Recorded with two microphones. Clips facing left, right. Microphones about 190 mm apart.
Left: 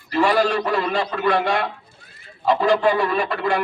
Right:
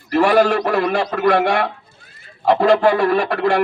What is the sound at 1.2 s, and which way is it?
A man's voice, 70° right (ahead or behind).